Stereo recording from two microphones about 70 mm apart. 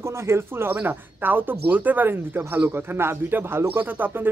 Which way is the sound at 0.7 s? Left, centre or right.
Right.